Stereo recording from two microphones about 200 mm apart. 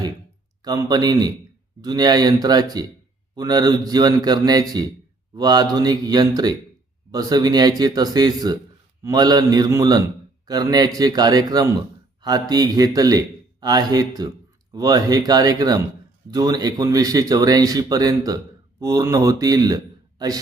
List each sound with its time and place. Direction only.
0.6 s a man's voice: 20° right (ahead or behind)